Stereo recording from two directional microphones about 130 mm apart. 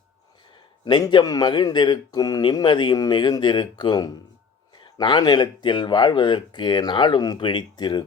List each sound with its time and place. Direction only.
0.9 s speech: 35° left (ahead or behind)